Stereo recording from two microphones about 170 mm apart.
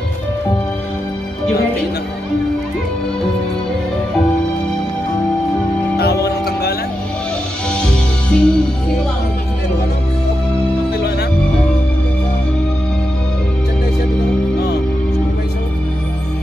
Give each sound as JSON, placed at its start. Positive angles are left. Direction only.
{"t": 6.2, "sound": "music", "side_deg": 65}
{"t": 7.8, "sound": "music", "side_deg": 5}